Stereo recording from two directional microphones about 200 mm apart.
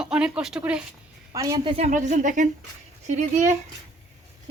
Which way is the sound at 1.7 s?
35° right (ahead or behind).